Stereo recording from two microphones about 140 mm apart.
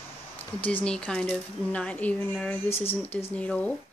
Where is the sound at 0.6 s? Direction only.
10° left (ahead or behind).